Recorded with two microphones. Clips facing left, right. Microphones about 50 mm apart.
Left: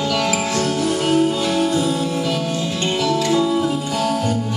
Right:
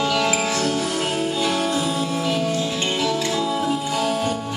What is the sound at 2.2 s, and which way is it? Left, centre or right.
Music, centre.